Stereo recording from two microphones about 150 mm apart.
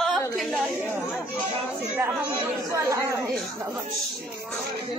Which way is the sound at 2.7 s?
20° right (ahead or behind).